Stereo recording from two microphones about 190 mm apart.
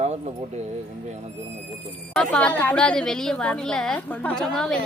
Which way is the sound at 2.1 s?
5° left (ahead or behind).